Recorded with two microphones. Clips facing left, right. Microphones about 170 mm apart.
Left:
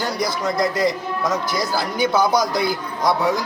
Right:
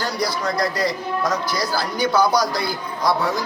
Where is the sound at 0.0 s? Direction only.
20° left (ahead or behind).